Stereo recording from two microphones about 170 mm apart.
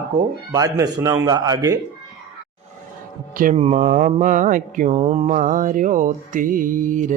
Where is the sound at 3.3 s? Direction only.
55° right (ahead or behind).